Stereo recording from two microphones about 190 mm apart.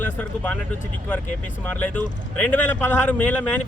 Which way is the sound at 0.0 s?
10° left (ahead or behind).